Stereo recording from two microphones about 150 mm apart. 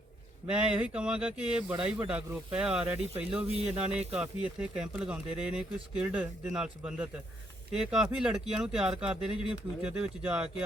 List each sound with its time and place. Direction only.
0.5 s speech: 10° right (ahead or behind)
3.4 s speech: 40° right (ahead or behind)
3.7 s speech: 5° right (ahead or behind)